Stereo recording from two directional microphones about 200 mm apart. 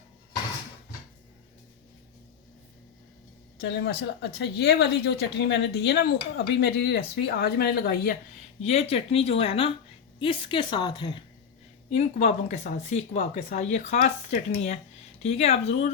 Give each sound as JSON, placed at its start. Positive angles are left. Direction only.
{"t": 3.6, "sound": "speech", "side_deg": 60}
{"t": 8.6, "sound": "speech", "side_deg": 30}
{"t": 11.9, "sound": "speech", "side_deg": 35}